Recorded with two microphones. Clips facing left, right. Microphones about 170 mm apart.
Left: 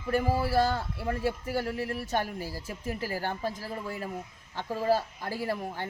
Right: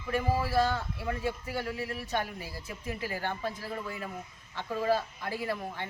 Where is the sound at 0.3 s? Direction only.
30° left (ahead or behind).